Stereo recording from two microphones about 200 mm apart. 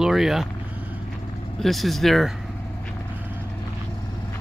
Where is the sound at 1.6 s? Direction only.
Centre (ahead or behind).